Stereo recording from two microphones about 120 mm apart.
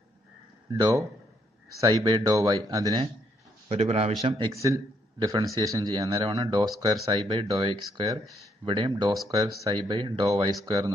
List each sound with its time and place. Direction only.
0.7 s speech: 35° right (ahead or behind)
3.6 s a man's voice: 60° right (ahead or behind)
4.5 s speech: 25° right (ahead or behind)
7.1 s speech: 50° right (ahead or behind)
7.4 s speech: 35° right (ahead or behind)
9.3 s speech: 30° right (ahead or behind)